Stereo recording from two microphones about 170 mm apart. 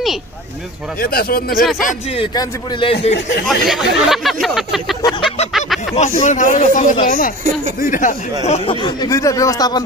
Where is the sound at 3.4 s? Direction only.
Centre (ahead or behind).